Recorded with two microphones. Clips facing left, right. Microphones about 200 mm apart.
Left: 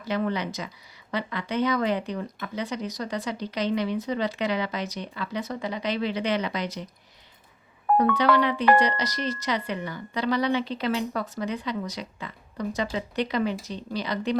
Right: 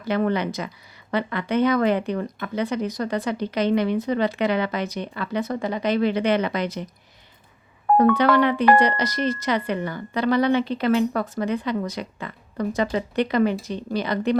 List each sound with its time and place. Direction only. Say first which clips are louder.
0.0 s speech: right 5 dB; 55° right (ahead or behind)
7.9 s speech: right 4 dB; 55° right (ahead or behind)